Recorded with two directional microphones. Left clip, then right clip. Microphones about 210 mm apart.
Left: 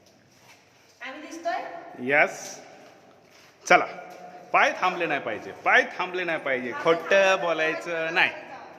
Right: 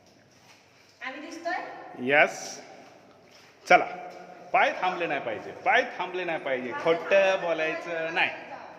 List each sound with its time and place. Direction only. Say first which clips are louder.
2.0 s a man's voice: even; centre (ahead or behind)
3.6 s a man's voice: left 1 dB; 15° left (ahead or behind)